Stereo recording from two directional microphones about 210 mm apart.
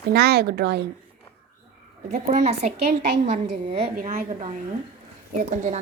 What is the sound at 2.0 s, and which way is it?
A woman's voice, 35° right (ahead or behind).